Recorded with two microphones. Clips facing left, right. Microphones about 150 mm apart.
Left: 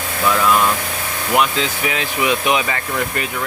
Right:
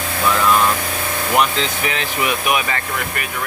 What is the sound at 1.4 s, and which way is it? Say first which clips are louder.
Speech: left 1 dB; 10° left (ahead or behind).